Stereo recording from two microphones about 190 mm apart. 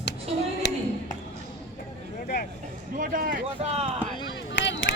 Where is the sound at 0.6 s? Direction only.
60° left (ahead or behind).